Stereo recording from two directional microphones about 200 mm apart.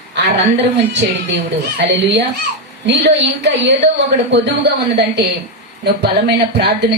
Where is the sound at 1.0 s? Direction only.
55° right (ahead or behind).